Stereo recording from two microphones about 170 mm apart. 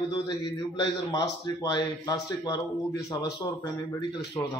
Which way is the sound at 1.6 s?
25° left (ahead or behind).